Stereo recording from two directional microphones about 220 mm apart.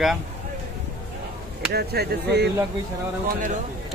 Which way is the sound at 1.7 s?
45° right (ahead or behind).